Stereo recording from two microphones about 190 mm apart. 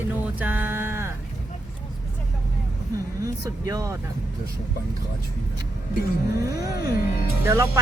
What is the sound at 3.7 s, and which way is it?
Speech, 15° right (ahead or behind).